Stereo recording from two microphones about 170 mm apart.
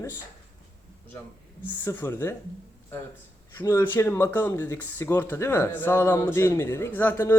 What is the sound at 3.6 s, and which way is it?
Speech, 15° left (ahead or behind).